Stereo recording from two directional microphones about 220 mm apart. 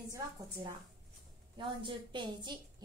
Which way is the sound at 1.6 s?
20° right (ahead or behind).